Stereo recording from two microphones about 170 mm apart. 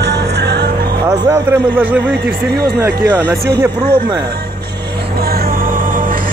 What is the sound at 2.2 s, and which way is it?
Speech, 70° right (ahead or behind).